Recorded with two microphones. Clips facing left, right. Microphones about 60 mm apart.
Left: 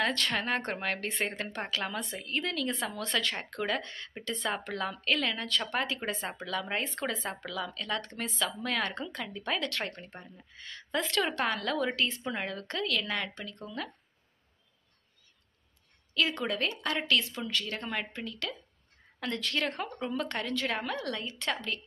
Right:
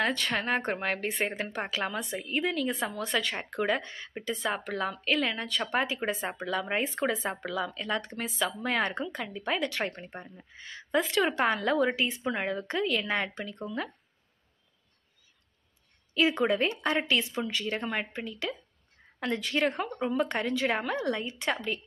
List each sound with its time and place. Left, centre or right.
0.0 s a woman's voice: centre
8.6 s a woman's voice: centre
16.2 s a woman's voice: right
19.7 s a woman's voice: centre
20.2 s a woman's voice: centre